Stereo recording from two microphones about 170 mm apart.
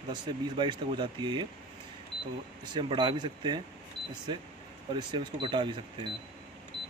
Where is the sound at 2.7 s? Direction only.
25° right (ahead or behind).